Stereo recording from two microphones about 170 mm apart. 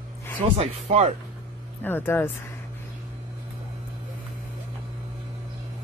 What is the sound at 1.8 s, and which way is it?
Speech, 10° left (ahead or behind).